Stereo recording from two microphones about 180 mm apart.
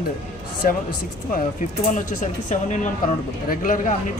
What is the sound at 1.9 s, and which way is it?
Speech, 45° left (ahead or behind).